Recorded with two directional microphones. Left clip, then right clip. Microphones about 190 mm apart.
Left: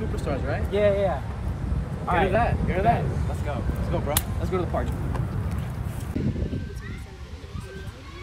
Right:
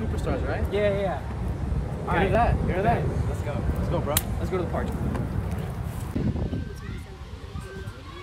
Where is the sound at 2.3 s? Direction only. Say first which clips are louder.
Even; 20° right (ahead or behind).